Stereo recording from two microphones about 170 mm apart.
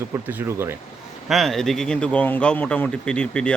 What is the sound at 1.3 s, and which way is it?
Speech, centre (ahead or behind).